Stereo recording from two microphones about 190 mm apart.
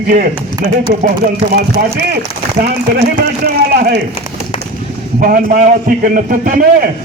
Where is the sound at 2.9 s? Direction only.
55° right (ahead or behind).